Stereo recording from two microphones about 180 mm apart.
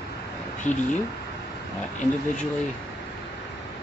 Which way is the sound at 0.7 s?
40° left (ahead or behind).